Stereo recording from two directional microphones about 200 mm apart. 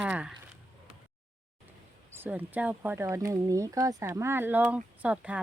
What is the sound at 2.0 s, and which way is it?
Speech, 10° right (ahead or behind).